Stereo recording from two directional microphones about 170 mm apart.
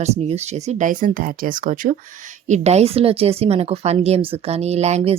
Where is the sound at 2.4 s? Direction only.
40° right (ahead or behind).